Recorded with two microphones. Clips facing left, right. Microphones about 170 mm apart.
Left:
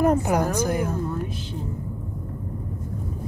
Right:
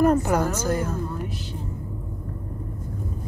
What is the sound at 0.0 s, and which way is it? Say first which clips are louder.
Speech: right 1 dB; 15° left (ahead or behind).